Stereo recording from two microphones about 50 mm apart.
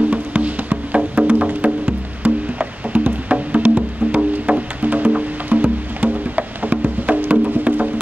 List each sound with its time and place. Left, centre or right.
0.1 s music: right